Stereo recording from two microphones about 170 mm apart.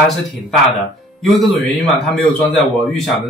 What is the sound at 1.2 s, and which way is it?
Speech, centre (ahead or behind).